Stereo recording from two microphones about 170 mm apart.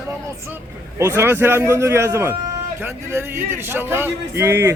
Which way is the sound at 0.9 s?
15° right (ahead or behind).